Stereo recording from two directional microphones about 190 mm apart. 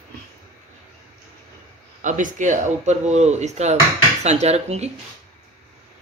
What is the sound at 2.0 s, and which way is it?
Speech, 40° right (ahead or behind).